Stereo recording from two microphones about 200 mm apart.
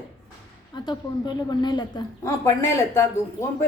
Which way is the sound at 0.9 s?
20° left (ahead or behind).